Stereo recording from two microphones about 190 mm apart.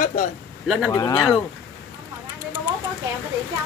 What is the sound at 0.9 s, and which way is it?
Speech, 20° left (ahead or behind).